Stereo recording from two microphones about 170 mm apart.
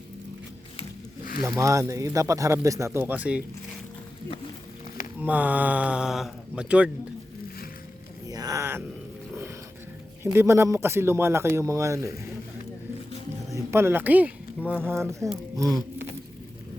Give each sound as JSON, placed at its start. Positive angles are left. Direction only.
{"t": 1.4, "sound": "speech", "side_deg": -20}
{"t": 5.2, "sound": "speech", "side_deg": -10}
{"t": 8.3, "sound": "speech", "side_deg": -20}
{"t": 10.2, "sound": "speech", "side_deg": -15}
{"t": 13.5, "sound": "speech", "side_deg": -15}
{"t": 15.5, "sound": "a sound", "side_deg": -20}